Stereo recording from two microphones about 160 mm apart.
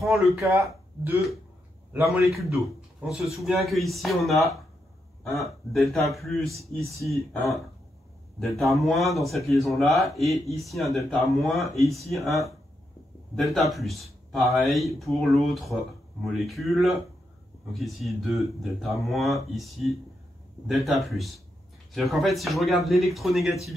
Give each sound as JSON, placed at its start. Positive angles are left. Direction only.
{"t": 0.0, "sound": "speech", "side_deg": 0}
{"t": 0.4, "sound": "a man's voice", "side_deg": -20}
{"t": 8.5, "sound": "speech", "side_deg": 0}